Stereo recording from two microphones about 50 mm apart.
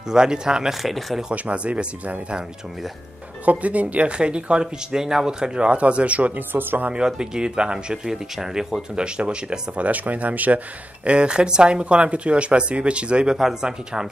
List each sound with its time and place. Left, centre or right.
0.1 s speech: centre
0.8 s speech: centre
1.3 s speech: right
3.4 s speech: right
6.5 s speech: right
6.9 s speech: centre
9.8 s speech: right
11.1 s speech: centre